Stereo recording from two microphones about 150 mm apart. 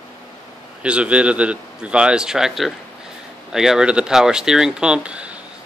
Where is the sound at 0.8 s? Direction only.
5° right (ahead or behind).